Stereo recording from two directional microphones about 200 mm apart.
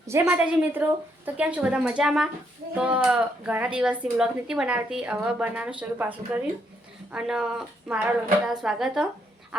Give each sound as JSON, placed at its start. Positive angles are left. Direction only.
{"t": 0.1, "sound": "a woman's voice", "side_deg": -10}